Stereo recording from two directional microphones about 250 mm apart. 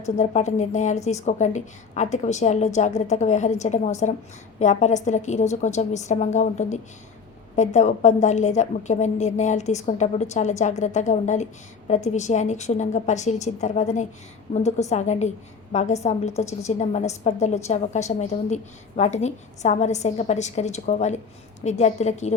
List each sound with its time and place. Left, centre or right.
0.0 s a woman's voice: left